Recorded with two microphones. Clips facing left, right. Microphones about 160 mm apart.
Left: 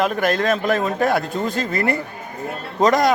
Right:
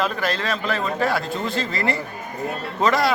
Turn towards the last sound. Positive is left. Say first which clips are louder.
# left 3 dB
turn(degrees=45)  # may be behind; listen again after turning